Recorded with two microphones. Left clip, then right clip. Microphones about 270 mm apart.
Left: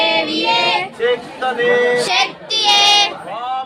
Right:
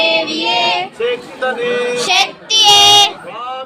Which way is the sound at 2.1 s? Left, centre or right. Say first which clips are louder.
Right 4 dB; centre.